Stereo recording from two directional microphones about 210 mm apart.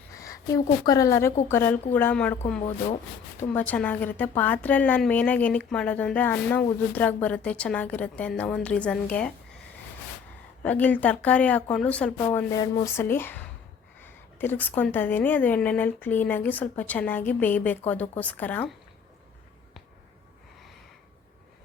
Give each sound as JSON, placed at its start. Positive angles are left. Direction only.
{"t": 0.1, "sound": "a woman's voice", "side_deg": 15}
{"t": 3.5, "sound": "a woman's voice", "side_deg": 5}
{"t": 10.6, "sound": "a woman's voice", "side_deg": 5}